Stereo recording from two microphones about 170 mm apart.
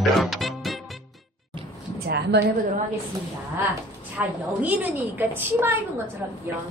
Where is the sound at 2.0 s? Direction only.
70° right (ahead or behind).